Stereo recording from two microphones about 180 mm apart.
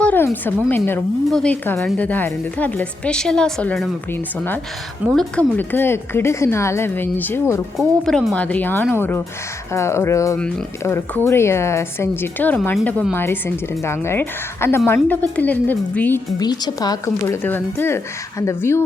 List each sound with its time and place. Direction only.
0.0 s a sound: 10° left (ahead or behind)
1.3 s a woman's voice: 5° left (ahead or behind)
5.0 s a woman's voice: 5° left (ahead or behind)
7.8 s a woman's voice: centre (ahead or behind)
16.4 s a woman's voice: 20° left (ahead or behind)